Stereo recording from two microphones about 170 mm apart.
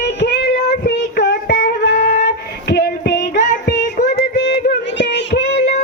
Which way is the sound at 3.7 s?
45° left (ahead or behind).